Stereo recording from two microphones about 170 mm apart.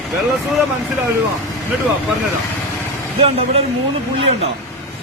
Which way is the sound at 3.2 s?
35° right (ahead or behind).